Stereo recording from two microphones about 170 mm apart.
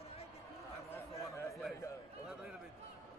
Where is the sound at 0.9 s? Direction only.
15° left (ahead or behind).